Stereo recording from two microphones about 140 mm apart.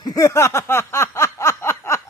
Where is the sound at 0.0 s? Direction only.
25° left (ahead or behind).